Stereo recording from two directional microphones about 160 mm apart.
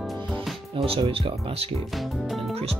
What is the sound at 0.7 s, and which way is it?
Speech, 35° right (ahead or behind).